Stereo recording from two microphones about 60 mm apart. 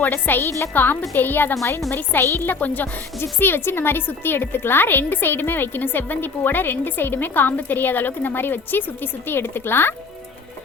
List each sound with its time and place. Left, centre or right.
0.0 s a woman's voice: left